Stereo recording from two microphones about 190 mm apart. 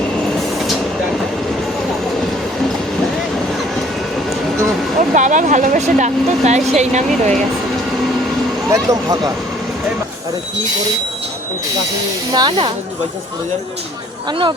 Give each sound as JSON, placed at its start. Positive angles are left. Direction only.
{"t": 4.9, "sound": "speech", "side_deg": -40}
{"t": 8.7, "sound": "speech", "side_deg": -15}
{"t": 12.3, "sound": "speech", "side_deg": -20}
{"t": 14.3, "sound": "speech", "side_deg": -25}